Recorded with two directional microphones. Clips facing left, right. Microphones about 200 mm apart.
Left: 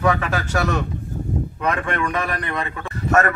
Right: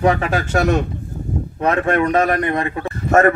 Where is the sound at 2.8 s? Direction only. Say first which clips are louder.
Right 4 dB; 30° right (ahead or behind).